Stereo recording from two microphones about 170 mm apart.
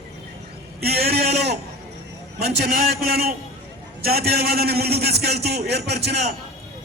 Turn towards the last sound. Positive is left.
turn(degrees=-75)  # may be behind; listen again after turning